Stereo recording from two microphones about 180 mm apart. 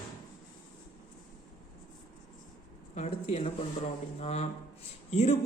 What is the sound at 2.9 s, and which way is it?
A woman's voice, 35° left (ahead or behind).